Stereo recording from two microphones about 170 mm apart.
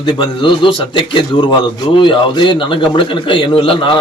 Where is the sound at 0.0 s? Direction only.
30° left (ahead or behind).